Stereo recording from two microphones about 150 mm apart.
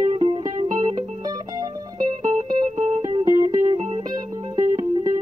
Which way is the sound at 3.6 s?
45° right (ahead or behind).